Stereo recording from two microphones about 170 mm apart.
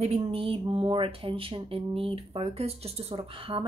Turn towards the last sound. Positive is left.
turn(degrees=-30)  # may be behind; listen again after turning